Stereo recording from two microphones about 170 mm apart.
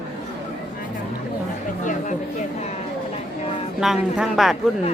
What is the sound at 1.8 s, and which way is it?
Chatter, 50° left (ahead or behind).